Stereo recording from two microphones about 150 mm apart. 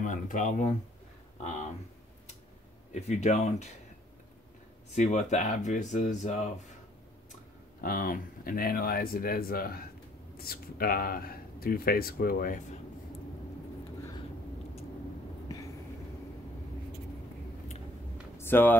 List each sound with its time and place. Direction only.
0.0 s speech: 60° left (ahead or behind)
2.9 s speech: 50° left (ahead or behind)
4.9 s speech: 50° left (ahead or behind)
7.8 s speech: 70° left (ahead or behind)
18.4 s speech: 15° left (ahead or behind)